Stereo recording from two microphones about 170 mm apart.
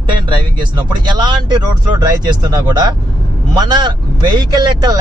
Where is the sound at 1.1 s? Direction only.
25° right (ahead or behind).